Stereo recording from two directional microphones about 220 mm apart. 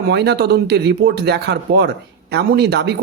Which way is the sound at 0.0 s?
50° right (ahead or behind).